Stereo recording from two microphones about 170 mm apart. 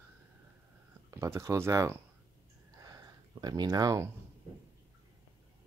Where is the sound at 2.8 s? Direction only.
20° right (ahead or behind).